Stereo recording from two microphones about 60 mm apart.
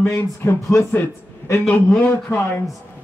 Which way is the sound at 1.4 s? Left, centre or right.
Left.